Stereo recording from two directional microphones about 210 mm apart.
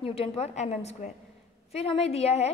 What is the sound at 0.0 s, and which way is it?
A woman's voice, 30° left (ahead or behind).